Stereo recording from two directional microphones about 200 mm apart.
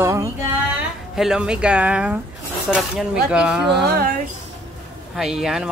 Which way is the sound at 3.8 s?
50° right (ahead or behind).